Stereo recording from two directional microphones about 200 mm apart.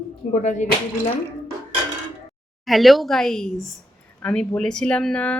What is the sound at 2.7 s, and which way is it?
Speech, centre (ahead or behind).